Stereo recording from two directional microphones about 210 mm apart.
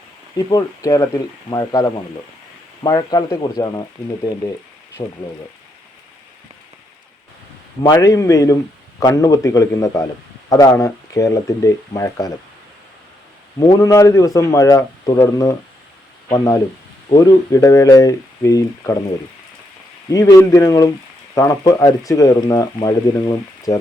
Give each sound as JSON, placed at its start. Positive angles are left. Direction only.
{"t": 0.3, "sound": "speech", "side_deg": 15}
{"t": 5.0, "sound": "speech", "side_deg": 20}
{"t": 7.8, "sound": "speech", "side_deg": 20}
{"t": 13.6, "sound": "speech", "side_deg": 15}
{"t": 20.1, "sound": "speech", "side_deg": 15}